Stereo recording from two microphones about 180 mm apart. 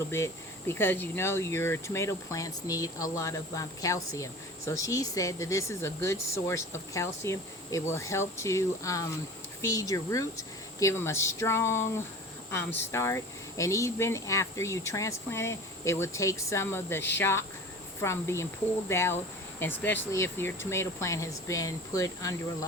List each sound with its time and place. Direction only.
0.7 s speech: 10° left (ahead or behind)